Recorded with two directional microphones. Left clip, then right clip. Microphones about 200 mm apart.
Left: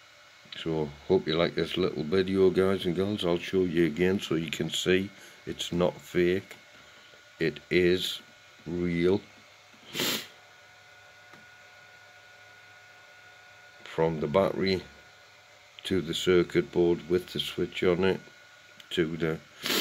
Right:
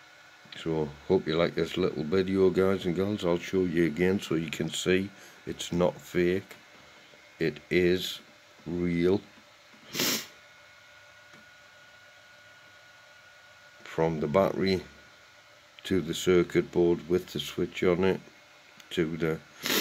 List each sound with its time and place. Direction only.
0.5 s speech: centre (ahead or behind)
9.8 s a sound: centre (ahead or behind)
13.8 s speech: centre (ahead or behind)